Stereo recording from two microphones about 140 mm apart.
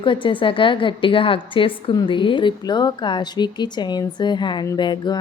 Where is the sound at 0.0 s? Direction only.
35° left (ahead or behind).